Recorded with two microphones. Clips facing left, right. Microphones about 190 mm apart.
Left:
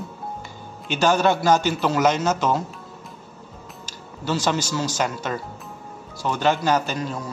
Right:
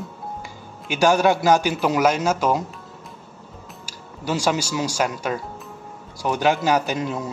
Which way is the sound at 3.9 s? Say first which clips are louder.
Even; 10° right (ahead or behind).